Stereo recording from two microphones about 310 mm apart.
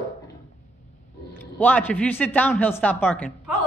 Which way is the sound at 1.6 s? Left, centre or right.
Centre.